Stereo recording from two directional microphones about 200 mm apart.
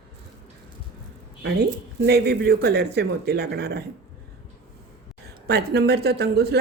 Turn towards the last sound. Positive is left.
turn(degrees=-55)  # may be behind; listen again after turning